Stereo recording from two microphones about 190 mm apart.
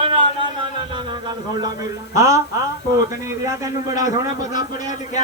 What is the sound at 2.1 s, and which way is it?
Speech, 15° right (ahead or behind).